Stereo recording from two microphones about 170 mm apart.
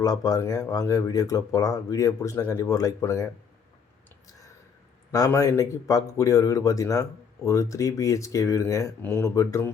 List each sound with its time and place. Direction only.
0.0 s a man's voice: 25° left (ahead or behind)
5.1 s a man's voice: 20° left (ahead or behind)